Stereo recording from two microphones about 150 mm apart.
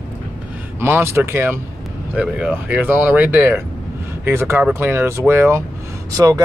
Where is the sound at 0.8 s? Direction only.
15° right (ahead or behind).